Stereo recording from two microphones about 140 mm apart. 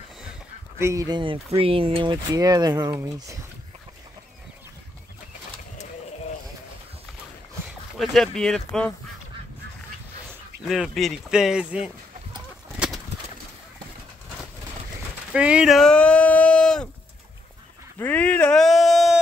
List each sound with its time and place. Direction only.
0.7 s speech: 20° right (ahead or behind); by 2.1 s 40° right (ahead or behind)
2.3 s speech: 25° right (ahead or behind)
7.6 s speech: centre (ahead or behind)
10.6 s speech: centre (ahead or behind)
12.7 s bird: 5° right (ahead or behind)
15.3 s a sound: 5° right (ahead or behind)
17.9 s speech: 10° left (ahead or behind)